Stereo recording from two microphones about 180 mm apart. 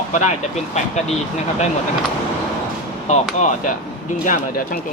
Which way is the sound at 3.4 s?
45° left (ahead or behind).